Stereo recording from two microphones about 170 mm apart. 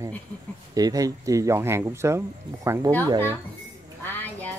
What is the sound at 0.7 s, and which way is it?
Speech, 20° right (ahead or behind).